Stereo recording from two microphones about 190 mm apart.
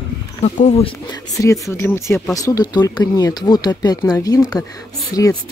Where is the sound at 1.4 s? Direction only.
15° left (ahead or behind).